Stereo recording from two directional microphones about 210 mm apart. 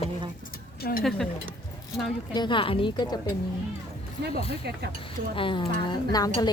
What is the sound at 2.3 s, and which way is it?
Speech, 20° left (ahead or behind).